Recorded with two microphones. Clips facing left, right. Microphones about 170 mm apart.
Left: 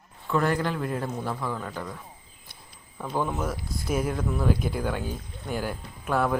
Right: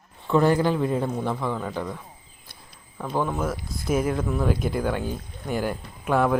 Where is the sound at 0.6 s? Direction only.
5° right (ahead or behind).